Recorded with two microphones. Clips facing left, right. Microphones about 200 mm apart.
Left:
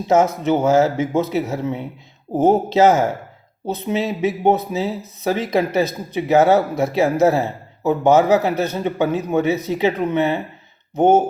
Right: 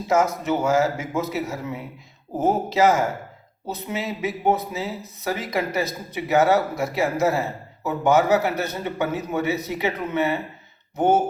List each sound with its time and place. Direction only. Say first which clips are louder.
0.1 s speech: left 5 dB; 25° left (ahead or behind)